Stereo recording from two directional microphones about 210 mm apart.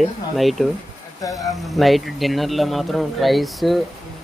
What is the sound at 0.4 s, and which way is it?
Speech, centre (ahead or behind).